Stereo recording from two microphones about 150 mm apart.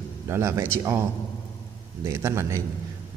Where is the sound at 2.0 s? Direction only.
20° right (ahead or behind).